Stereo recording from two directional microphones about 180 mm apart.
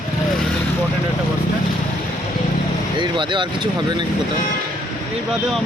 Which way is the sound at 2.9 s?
25° right (ahead or behind).